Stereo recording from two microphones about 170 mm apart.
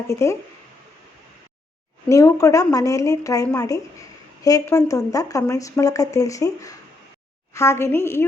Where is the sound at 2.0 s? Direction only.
15° left (ahead or behind).